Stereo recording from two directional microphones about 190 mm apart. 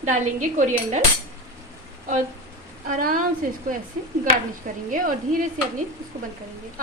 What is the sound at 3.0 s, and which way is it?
Speech, 45° right (ahead or behind).